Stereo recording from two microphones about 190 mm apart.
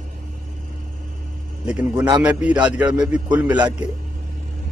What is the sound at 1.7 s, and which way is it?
A man's voice, 5° right (ahead or behind).